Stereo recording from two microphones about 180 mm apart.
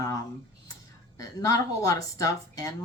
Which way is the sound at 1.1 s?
20° left (ahead or behind).